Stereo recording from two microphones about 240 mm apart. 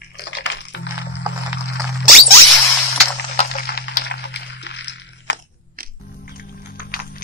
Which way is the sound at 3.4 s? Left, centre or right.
Left.